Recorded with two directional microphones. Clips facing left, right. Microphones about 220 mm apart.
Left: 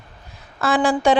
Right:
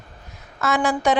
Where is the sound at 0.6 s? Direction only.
30° left (ahead or behind).